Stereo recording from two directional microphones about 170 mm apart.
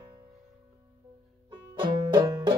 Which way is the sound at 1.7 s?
25° right (ahead or behind).